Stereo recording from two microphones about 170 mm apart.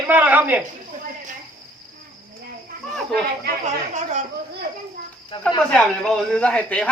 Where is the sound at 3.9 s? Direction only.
45° right (ahead or behind).